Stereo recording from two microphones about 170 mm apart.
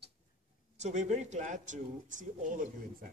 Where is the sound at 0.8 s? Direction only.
45° right (ahead or behind).